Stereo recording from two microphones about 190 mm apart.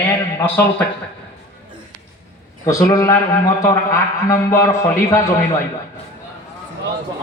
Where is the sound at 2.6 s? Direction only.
20° left (ahead or behind).